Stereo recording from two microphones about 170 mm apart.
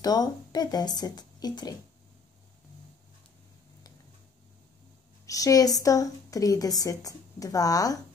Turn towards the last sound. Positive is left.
turn(degrees=20)  # may be behind; listen again after turning